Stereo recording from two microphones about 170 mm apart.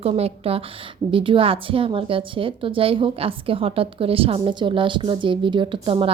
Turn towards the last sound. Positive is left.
turn(degrees=-30)  # may be behind; listen again after turning